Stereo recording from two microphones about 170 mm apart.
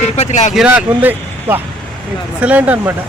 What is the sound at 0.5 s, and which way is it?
Speech, 5° right (ahead or behind).